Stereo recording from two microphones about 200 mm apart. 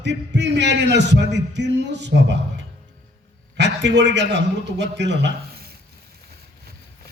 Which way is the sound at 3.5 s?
60° right (ahead or behind).